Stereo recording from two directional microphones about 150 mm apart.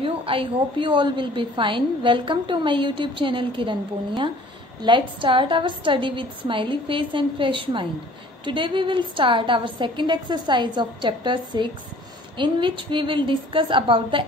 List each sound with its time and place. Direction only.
0.0 s a woman's voice: 35° right (ahead or behind)